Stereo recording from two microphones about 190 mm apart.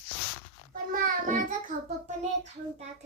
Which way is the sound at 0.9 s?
45° right (ahead or behind).